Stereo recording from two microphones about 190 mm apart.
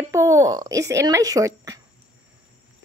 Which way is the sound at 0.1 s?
15° right (ahead or behind).